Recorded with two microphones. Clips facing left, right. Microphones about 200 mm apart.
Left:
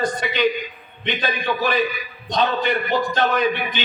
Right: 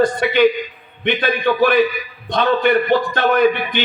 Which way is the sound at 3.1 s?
60° right (ahead or behind).